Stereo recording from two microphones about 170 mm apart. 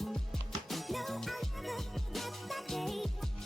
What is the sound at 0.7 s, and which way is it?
Music, centre (ahead or behind).